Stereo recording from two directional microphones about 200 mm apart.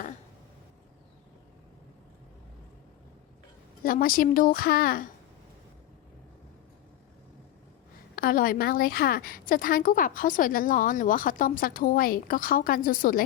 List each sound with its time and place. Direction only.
3.8 s a woman's voice: 45° left (ahead or behind)
8.1 s a woman's voice: 45° left (ahead or behind)